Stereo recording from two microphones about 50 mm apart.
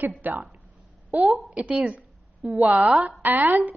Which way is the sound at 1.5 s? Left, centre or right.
Right.